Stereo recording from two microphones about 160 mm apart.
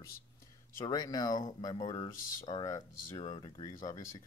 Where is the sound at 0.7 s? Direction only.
25° left (ahead or behind).